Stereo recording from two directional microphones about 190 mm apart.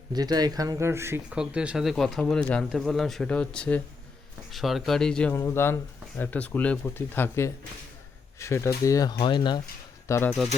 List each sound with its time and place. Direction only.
0.1 s speech: 20° right (ahead or behind); by 9.6 s 25° left (ahead or behind)
10.1 s speech: 15° left (ahead or behind)